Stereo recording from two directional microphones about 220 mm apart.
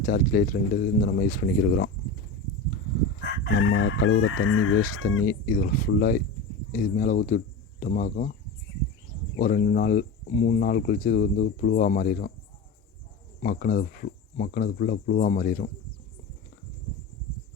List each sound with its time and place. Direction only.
0.0 s speech: 40° left (ahead or behind)
3.6 s speech: 60° left (ahead or behind)
5.2 s speech: 40° left (ahead or behind)
9.4 s speech: 40° left (ahead or behind)
13.4 s speech: 40° left (ahead or behind)